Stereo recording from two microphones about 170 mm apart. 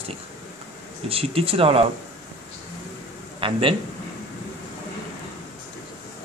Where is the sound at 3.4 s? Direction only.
30° right (ahead or behind).